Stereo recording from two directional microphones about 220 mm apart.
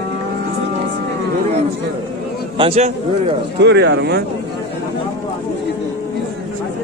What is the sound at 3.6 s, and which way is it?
Speech, 50° right (ahead or behind).